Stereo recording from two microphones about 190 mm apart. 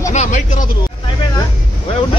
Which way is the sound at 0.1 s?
40° left (ahead or behind).